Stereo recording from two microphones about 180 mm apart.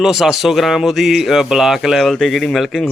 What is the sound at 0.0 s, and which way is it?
Speech, centre (ahead or behind).